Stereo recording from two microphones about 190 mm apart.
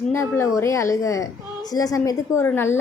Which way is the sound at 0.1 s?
15° left (ahead or behind).